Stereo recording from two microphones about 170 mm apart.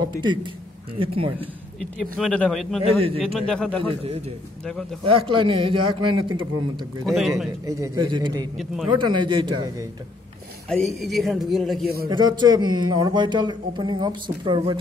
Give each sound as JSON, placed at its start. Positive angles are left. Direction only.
{"t": 0.2, "sound": "speech", "side_deg": -30}
{"t": 1.8, "sound": "speech", "side_deg": 5}
{"t": 3.0, "sound": "speech", "side_deg": -35}
{"t": 3.3, "sound": "speech", "side_deg": 5}
{"t": 5.0, "sound": "speech", "side_deg": -30}
{"t": 7.1, "sound": "speech", "side_deg": 0}
{"t": 7.6, "sound": "speech", "side_deg": -20}
{"t": 10.7, "sound": "speech", "side_deg": 0}
{"t": 12.1, "sound": "speech", "side_deg": -25}